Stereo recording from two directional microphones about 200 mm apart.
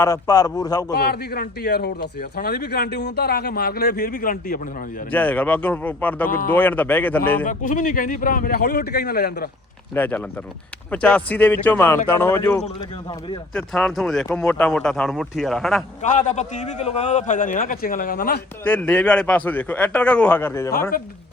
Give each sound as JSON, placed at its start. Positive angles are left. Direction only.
{"t": 0.0, "sound": "a man's voice", "side_deg": 15}
{"t": 0.9, "sound": "speech", "side_deg": 50}
{"t": 5.1, "sound": "a man's voice", "side_deg": 5}
{"t": 6.2, "sound": "speech", "side_deg": 45}
{"t": 6.5, "sound": "a man's voice", "side_deg": 10}
{"t": 7.4, "sound": "speech", "side_deg": 40}
{"t": 9.9, "sound": "a man's voice", "side_deg": 10}
{"t": 16.0, "sound": "a man's voice", "side_deg": 40}
{"t": 18.6, "sound": "a man's voice", "side_deg": 5}